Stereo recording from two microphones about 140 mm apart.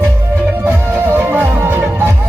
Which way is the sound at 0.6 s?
15° right (ahead or behind).